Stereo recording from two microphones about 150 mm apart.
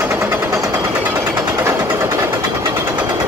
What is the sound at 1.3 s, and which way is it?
Vehicle, 20° right (ahead or behind).